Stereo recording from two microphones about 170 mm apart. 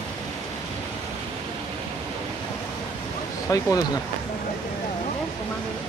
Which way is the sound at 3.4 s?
20° left (ahead or behind).